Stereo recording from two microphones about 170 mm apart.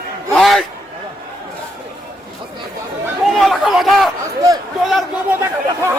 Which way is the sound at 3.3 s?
Centre (ahead or behind).